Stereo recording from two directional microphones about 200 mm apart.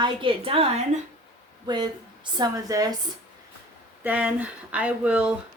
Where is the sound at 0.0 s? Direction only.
25° right (ahead or behind).